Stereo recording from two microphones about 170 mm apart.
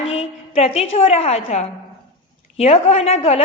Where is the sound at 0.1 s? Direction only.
40° left (ahead or behind).